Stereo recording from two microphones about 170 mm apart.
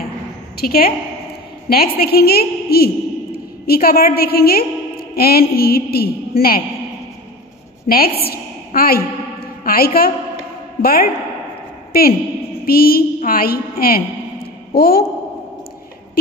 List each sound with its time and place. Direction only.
0.6 s a woman's voice: 65° left (ahead or behind)
8.2 s a woman's voice: 65° left (ahead or behind)